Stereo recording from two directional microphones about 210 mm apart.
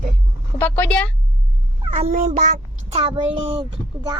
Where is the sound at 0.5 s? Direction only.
10° left (ahead or behind).